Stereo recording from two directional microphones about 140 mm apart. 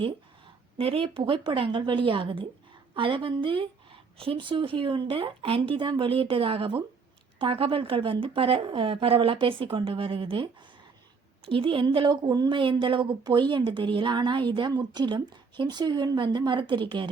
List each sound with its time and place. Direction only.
0.8 s speech: 45° right (ahead or behind)